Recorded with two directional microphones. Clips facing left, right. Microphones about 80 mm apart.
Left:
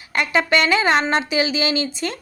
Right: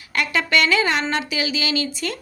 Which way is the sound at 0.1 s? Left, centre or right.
Left.